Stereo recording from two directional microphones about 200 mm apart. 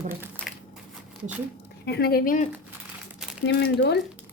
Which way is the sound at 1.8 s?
55° left (ahead or behind).